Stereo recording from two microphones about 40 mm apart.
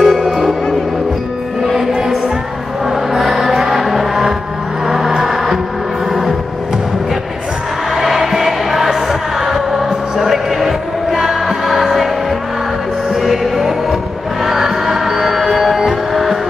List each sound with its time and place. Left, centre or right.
0.0 s music: centre
1.6 s music: centre
4.8 s vehicle: centre
5.1 s music: centre
7.9 s music: centre
13.2 s music: centre